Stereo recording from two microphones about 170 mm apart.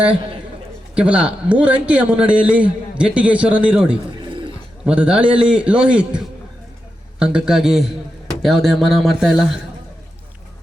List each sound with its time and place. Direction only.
0.9 s a man's voice: 5° right (ahead or behind)
4.2 s bird: 30° right (ahead or behind)
4.9 s a man's voice: 5° right (ahead or behind)